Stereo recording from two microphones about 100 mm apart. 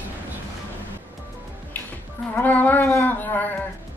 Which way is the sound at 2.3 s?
15° left (ahead or behind).